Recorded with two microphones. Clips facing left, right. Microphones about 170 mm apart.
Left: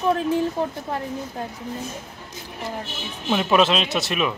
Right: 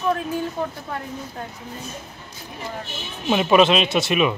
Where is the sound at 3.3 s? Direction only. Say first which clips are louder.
Right 3 dB; 5° right (ahead or behind).